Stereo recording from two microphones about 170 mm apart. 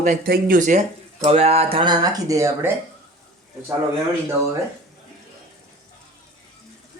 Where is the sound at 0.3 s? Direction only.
55° right (ahead or behind).